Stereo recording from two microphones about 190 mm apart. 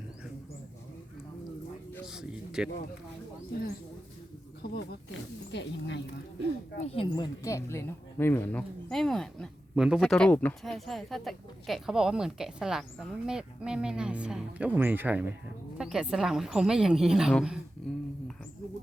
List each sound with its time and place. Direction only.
2.0 s a sound: 5° right (ahead or behind)
5.5 s speech: 70° left (ahead or behind)
6.7 s speech: 30° left (ahead or behind)
7.4 s a woman's voice: 15° left (ahead or behind)